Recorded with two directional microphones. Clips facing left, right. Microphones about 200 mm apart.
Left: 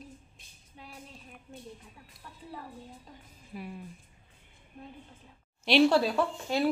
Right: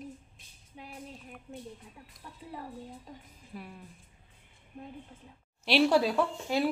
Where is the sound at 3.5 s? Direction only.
5° left (ahead or behind).